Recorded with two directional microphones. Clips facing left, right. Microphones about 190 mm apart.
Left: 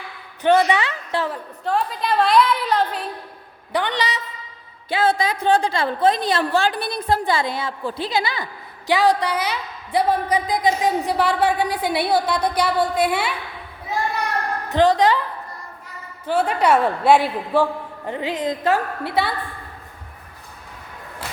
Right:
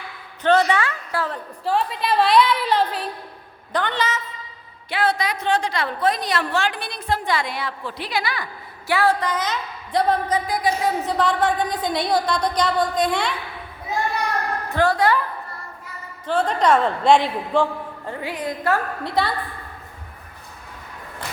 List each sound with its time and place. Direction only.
0.4 s a woman's voice: 15° left (ahead or behind)
1.6 s a woman's voice: centre (ahead or behind)
3.7 s a woman's voice: 15° left (ahead or behind)
4.9 s a woman's voice: 30° left (ahead or behind); by 13.3 s 5° left (ahead or behind)
14.7 s a woman's voice: 20° left (ahead or behind)
16.2 s a woman's voice: 10° left (ahead or behind)
18.0 s a woman's voice: 20° left (ahead or behind)
19.0 s a woman's voice: 5° left (ahead or behind)